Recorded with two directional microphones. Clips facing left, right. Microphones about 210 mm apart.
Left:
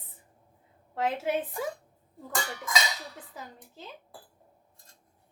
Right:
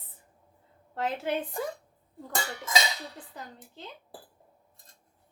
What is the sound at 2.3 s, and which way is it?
Speech, 30° right (ahead or behind).